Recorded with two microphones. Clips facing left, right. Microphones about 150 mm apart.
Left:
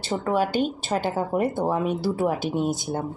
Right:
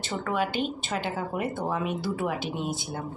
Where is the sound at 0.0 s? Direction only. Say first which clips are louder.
Left 5 dB; 30° left (ahead or behind).